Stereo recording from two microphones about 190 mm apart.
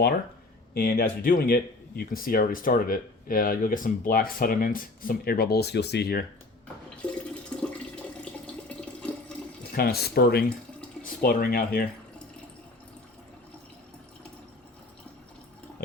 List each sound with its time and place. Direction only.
0.7 s speech: 55° left (ahead or behind)
7.0 s toilet flush: 5° left (ahead or behind)
8.8 s water: 5° left (ahead or behind)
9.7 s speech: 55° left (ahead or behind)